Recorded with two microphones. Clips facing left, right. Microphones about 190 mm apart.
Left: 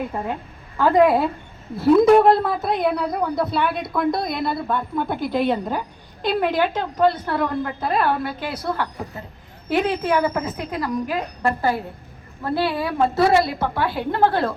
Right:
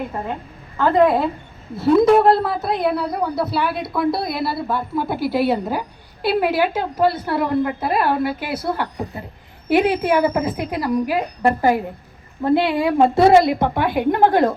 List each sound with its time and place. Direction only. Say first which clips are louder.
0.8 s a woman's voice: even; 5° left (ahead or behind); by 14.5 s 15° right (ahead or behind)